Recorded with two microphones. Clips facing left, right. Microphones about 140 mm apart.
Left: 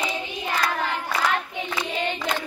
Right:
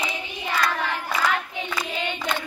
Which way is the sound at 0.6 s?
30° left (ahead or behind).